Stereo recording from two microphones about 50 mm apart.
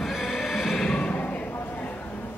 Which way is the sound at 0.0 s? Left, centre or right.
Centre.